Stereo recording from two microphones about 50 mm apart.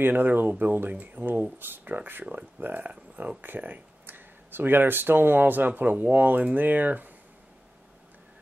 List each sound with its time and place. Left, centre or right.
0.0 s speech: right